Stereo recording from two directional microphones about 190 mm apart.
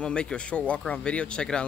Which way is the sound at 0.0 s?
5° left (ahead or behind).